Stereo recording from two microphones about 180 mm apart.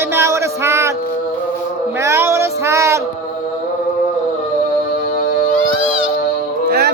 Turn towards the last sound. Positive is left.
turn(degrees=-65)  # may be behind; listen again after turning